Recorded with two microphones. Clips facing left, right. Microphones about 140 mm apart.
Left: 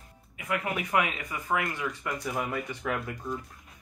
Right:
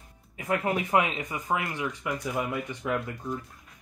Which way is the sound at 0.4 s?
30° right (ahead or behind).